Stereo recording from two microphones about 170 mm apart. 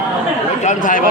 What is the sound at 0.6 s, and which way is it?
Speech, 50° left (ahead or behind).